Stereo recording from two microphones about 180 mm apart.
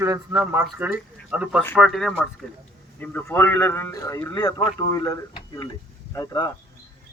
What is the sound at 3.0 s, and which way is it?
A man's voice, 10° left (ahead or behind).